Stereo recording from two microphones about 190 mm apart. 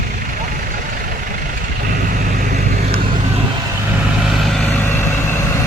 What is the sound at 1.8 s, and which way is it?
Vehicle, 45° right (ahead or behind).